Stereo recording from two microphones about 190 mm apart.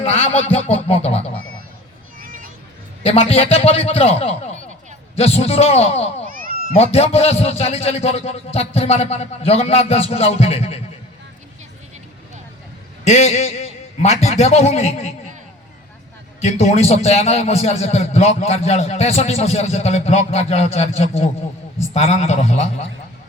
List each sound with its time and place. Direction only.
0.0 s a man's voice: 30° left (ahead or behind)
2.1 s a sound: 45° right (ahead or behind)
3.0 s a man's voice: 30° left (ahead or behind)
13.1 s a man's voice: 35° left (ahead or behind)
16.4 s a man's voice: 35° left (ahead or behind)